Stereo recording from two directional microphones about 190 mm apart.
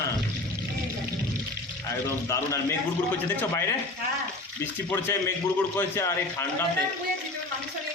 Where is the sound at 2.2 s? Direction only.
15° left (ahead or behind).